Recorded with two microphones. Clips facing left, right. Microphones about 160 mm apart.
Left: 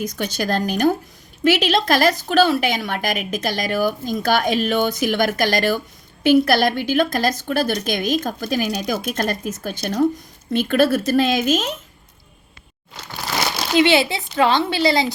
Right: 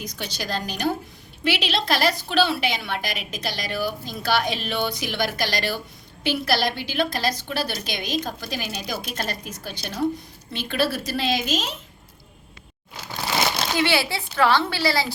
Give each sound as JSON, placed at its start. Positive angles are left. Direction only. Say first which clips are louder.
{"t": 0.0, "sound": "a woman's voice", "louder": "left 8 dB", "side_deg": 50}
{"t": 12.9, "sound": "a sound", "louder": "even", "side_deg": -10}
{"t": 13.7, "sound": "a woman's voice", "louder": "left 9 dB", "side_deg": 20}